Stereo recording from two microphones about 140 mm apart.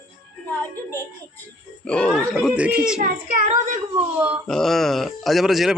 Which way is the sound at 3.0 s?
70° right (ahead or behind).